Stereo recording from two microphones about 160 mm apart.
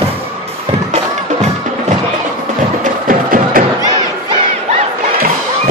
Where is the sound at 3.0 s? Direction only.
60° right (ahead or behind).